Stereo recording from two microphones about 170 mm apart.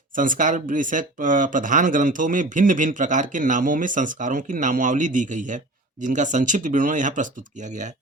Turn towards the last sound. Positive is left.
turn(degrees=-45)  # may be behind; listen again after turning